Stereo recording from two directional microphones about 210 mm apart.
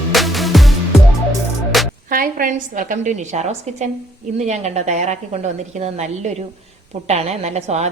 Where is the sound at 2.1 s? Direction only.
40° right (ahead or behind).